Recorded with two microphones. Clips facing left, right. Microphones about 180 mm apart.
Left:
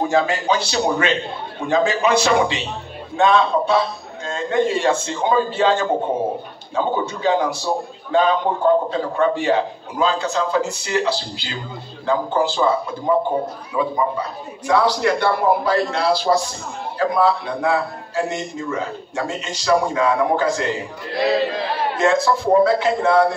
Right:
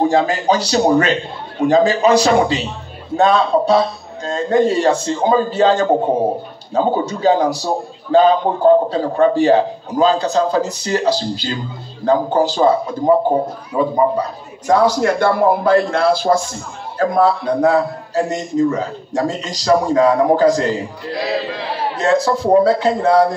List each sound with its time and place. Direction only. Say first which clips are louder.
0.0 s a man's voice: right 4 dB; 35° right (ahead or behind)
21.9 s a man's voice: right 2 dB; 35° right (ahead or behind)